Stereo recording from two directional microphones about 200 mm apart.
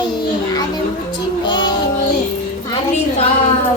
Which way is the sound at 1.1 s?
20° left (ahead or behind).